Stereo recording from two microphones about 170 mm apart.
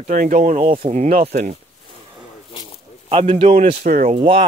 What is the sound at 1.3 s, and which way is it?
Speech, 50° right (ahead or behind).